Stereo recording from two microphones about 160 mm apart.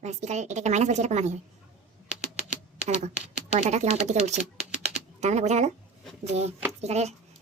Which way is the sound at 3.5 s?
45° right (ahead or behind).